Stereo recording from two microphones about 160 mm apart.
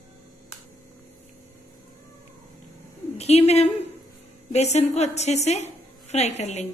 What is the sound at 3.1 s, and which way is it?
A woman's voice, 40° left (ahead or behind).